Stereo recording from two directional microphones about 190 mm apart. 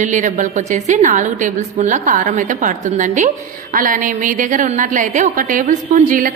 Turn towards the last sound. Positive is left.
turn(degrees=-45)  # may be behind; listen again after turning